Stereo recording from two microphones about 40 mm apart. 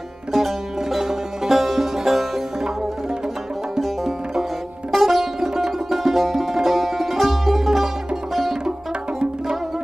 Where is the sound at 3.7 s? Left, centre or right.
Centre.